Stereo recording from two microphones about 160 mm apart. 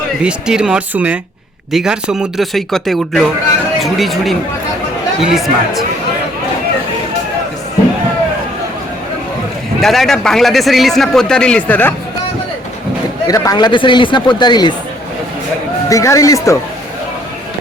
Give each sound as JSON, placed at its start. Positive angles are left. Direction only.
{"t": 0.2, "sound": "a man's voice", "side_deg": -5}
{"t": 9.8, "sound": "a man's voice", "side_deg": 0}
{"t": 13.2, "sound": "speech", "side_deg": 20}
{"t": 15.9, "sound": "speech", "side_deg": 20}